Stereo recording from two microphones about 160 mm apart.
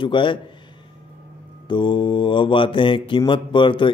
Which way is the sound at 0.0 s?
30° left (ahead or behind).